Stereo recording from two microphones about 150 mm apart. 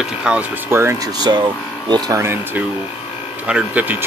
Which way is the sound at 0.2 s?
10° right (ahead or behind).